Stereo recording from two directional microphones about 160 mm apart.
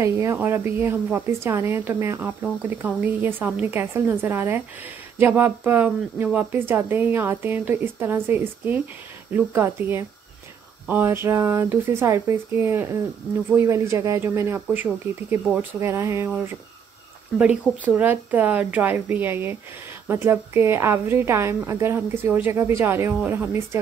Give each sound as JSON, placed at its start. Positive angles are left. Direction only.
{"t": 0.0, "sound": "speech", "side_deg": -15}
{"t": 17.4, "sound": "speech", "side_deg": -10}